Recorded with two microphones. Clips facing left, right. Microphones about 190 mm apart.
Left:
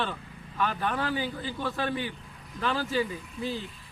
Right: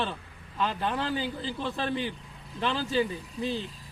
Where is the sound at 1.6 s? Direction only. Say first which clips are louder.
Even; 25° right (ahead or behind).